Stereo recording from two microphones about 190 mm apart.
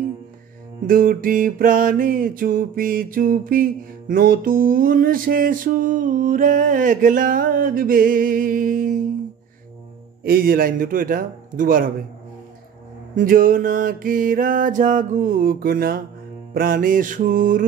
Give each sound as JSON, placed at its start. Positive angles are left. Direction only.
{"t": 0.8, "sound": "music", "side_deg": -50}
{"t": 10.2, "sound": "music", "side_deg": -50}
{"t": 13.1, "sound": "music", "side_deg": -45}